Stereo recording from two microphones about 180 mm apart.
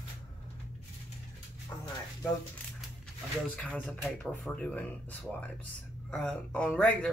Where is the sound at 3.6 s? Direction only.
10° left (ahead or behind).